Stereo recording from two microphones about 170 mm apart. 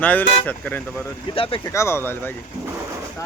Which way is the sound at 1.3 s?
30° left (ahead or behind).